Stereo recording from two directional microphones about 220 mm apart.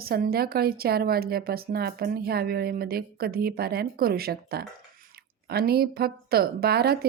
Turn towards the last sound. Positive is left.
turn(degrees=-45)  # may be behind; listen again after turning